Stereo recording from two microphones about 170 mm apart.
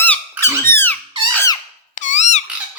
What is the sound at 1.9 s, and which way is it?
Squeak, 45° left (ahead or behind).